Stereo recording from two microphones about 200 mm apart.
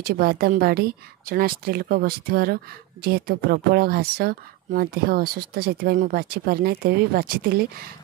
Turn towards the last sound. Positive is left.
turn(degrees=-50)  # may be behind; listen again after turning